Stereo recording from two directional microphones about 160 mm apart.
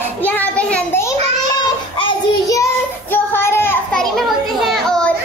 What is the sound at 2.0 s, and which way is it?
Child singing, 20° left (ahead or behind).